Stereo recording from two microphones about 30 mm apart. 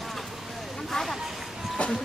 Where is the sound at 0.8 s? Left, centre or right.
Centre.